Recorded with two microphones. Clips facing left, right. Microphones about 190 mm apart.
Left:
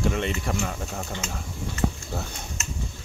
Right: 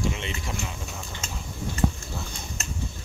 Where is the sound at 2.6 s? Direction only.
35° right (ahead or behind).